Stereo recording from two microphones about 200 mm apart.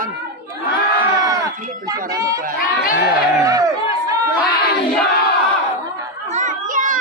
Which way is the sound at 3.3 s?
15° right (ahead or behind).